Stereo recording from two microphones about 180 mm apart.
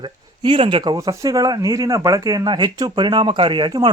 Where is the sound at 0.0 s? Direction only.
25° right (ahead or behind).